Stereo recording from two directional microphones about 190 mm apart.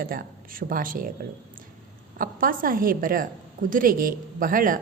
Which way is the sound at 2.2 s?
45° right (ahead or behind).